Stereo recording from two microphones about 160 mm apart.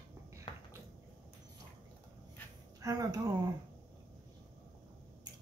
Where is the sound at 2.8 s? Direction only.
25° right (ahead or behind).